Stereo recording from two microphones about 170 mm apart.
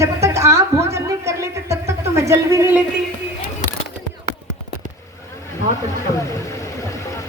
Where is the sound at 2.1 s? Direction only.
20° right (ahead or behind).